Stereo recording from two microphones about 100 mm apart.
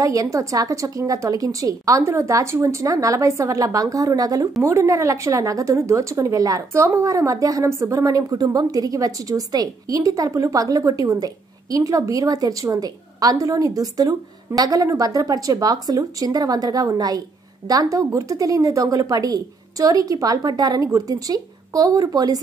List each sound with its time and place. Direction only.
0.0 s a woman's voice: 35° right (ahead or behind)